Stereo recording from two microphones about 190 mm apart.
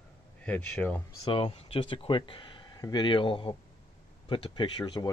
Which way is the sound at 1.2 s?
25° left (ahead or behind).